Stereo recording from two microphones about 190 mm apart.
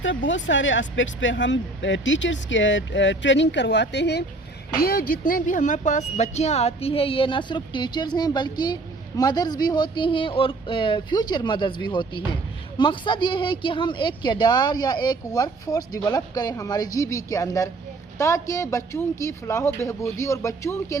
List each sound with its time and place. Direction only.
0.0 s speech: 75° left (ahead or behind)
4.8 s speech: 55° left (ahead or behind); by 21.0 s 15° left (ahead or behind)